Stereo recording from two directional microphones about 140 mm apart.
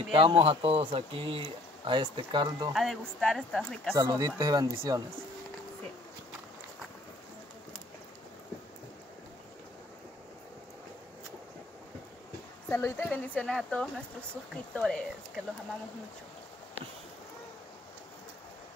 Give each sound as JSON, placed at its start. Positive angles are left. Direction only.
{"t": 0.1, "sound": "speech", "side_deg": -40}
{"t": 2.7, "sound": "speech", "side_deg": 0}
{"t": 3.9, "sound": "speech", "side_deg": -25}
{"t": 12.6, "sound": "a woman's voice", "side_deg": 15}